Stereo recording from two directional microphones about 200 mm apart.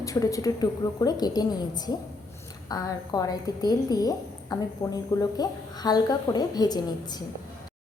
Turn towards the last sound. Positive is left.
turn(degrees=20)  # may be behind; listen again after turning